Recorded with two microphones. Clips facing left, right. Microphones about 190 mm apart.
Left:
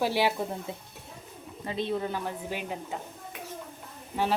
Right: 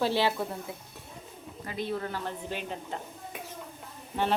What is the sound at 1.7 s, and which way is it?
A woman's voice, 25° left (ahead or behind).